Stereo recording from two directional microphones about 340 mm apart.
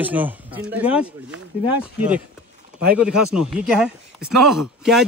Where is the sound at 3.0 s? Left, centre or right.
Centre.